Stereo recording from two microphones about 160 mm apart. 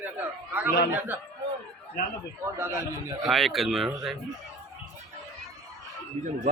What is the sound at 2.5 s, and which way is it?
Speech, 15° right (ahead or behind).